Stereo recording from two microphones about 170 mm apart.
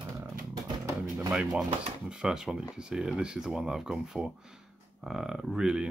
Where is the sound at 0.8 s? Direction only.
15° right (ahead or behind).